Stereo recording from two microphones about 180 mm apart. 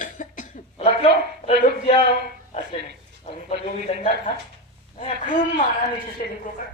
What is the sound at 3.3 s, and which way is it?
Speech, 40° left (ahead or behind).